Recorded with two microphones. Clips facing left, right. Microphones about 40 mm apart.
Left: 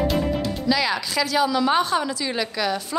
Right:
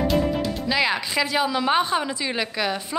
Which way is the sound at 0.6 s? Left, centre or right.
Right.